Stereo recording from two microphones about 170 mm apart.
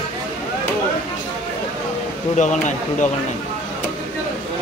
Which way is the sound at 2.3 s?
45° left (ahead or behind).